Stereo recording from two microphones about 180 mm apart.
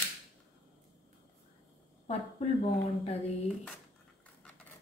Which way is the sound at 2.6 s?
35° left (ahead or behind).